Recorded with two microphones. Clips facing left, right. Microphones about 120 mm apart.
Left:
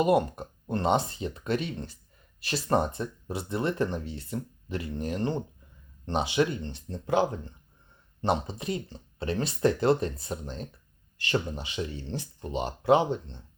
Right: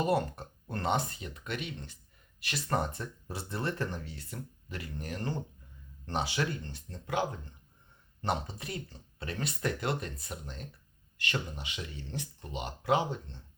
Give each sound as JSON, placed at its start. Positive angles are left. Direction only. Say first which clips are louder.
{"t": 0.0, "sound": "speech", "louder": "left 6 dB", "side_deg": 15}